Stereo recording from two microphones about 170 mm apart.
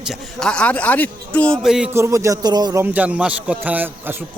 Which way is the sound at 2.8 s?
10° right (ahead or behind).